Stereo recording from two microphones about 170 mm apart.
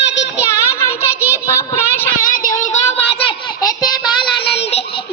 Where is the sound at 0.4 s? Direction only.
15° left (ahead or behind).